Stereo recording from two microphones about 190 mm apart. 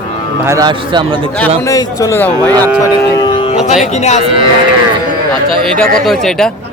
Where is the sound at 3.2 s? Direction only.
25° left (ahead or behind).